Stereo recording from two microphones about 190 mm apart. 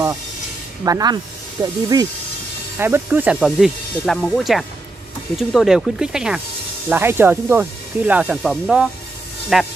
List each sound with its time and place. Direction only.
0.8 s speech: 20° right (ahead or behind); by 9.7 s centre (ahead or behind)